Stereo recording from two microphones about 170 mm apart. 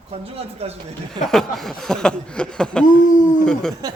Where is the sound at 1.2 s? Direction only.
Centre (ahead or behind).